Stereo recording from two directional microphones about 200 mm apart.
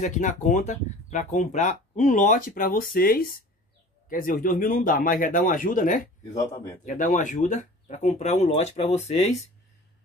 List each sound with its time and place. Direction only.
0.0 s speech: 40° left (ahead or behind)